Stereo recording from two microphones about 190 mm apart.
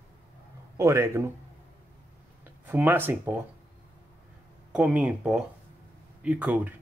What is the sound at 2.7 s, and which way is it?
Speech, 10° right (ahead or behind).